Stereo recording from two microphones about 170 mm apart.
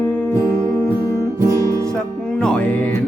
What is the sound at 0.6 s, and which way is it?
Music, 15° right (ahead or behind).